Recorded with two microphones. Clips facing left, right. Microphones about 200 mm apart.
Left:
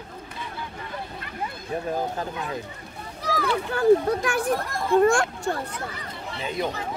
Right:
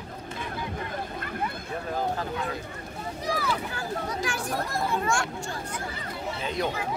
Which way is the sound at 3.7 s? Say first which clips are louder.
Left 13 dB; 55° left (ahead or behind).